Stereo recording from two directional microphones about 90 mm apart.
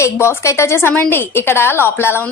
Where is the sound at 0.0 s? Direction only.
30° left (ahead or behind).